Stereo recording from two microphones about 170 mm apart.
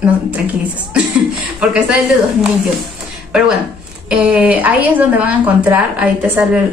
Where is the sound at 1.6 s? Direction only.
5° right (ahead or behind).